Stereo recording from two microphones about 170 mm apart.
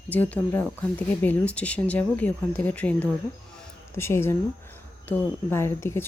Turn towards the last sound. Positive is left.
turn(degrees=15)  # may be behind; listen again after turning